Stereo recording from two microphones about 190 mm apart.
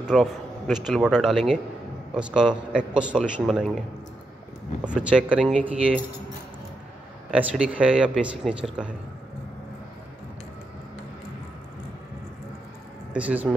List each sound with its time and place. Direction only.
0.0 s a man's voice: centre (ahead or behind)
4.8 s speech: 5° right (ahead or behind)
7.2 s speech: 5° right (ahead or behind)
13.1 s speech: 5° right (ahead or behind)